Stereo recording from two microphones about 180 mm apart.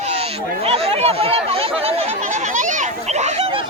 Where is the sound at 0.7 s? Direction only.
35° right (ahead or behind).